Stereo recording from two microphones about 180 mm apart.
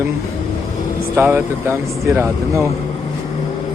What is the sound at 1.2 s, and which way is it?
Speech, 10° right (ahead or behind).